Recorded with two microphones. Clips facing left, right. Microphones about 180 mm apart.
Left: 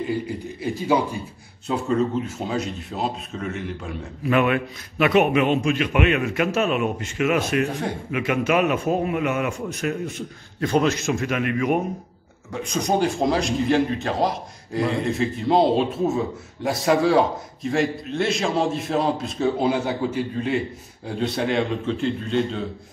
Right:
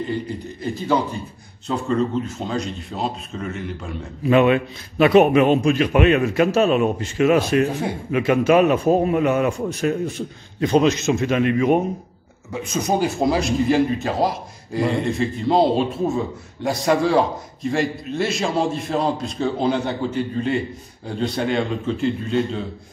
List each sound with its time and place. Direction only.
0.0 s a man's voice: 5° left (ahead or behind)
4.2 s a man's voice: 25° right (ahead or behind)
10.6 s a man's voice: 20° right (ahead or behind)
12.5 s a man's voice: 5° right (ahead or behind)